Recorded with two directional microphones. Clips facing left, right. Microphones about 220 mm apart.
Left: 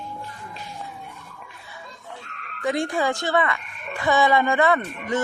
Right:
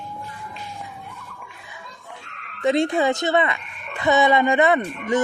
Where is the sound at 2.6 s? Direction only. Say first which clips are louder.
Right 4 dB; 25° right (ahead or behind).